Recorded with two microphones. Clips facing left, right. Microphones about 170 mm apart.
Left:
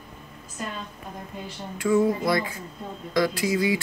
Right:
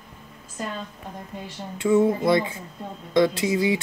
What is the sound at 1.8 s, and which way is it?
Speech, 25° right (ahead or behind).